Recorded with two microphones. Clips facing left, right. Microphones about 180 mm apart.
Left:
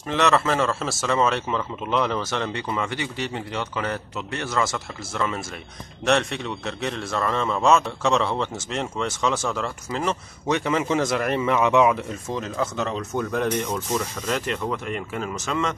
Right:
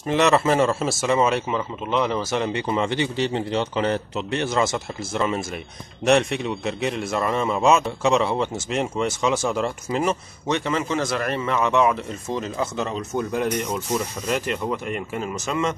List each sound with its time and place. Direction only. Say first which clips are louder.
0.1 s a man's voice: right 3 dB; 20° right (ahead or behind)
10.5 s a man's voice: left 1 dB; 10° left (ahead or behind)
12.4 s speech: even; 5° right (ahead or behind)